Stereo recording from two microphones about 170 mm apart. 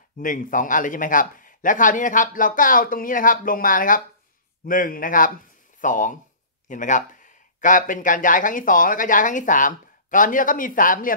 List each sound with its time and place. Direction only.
0.2 s speech: 50° left (ahead or behind)